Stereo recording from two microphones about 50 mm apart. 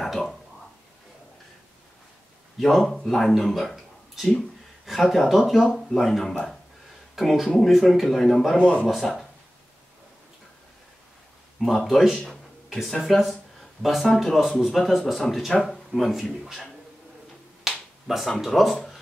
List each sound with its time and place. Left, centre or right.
0.0 s a sound: centre
2.6 s speech: centre
8.5 s speech: centre
8.8 s speech: centre
11.6 s speech: centre
17.6 s finger snapping: centre
18.4 s speech: centre